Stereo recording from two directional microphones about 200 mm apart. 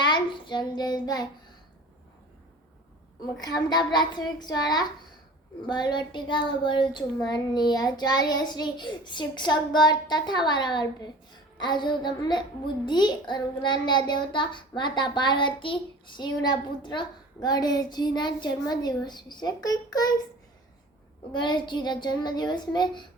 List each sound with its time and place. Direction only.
0.0 s child singing: 25° left (ahead or behind)
3.4 s a child's voice: 20° left (ahead or behind)
21.3 s a child's voice: 20° left (ahead or behind)